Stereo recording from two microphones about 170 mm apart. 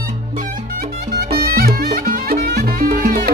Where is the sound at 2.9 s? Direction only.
50° right (ahead or behind).